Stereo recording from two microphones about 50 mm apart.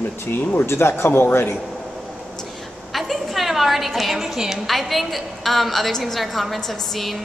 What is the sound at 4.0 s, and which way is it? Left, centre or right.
A woman's voice, centre.